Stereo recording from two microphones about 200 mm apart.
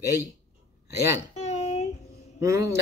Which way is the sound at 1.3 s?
35° left (ahead or behind).